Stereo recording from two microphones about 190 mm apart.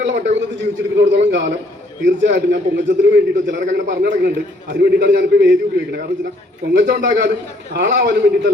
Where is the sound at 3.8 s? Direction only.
55° right (ahead or behind).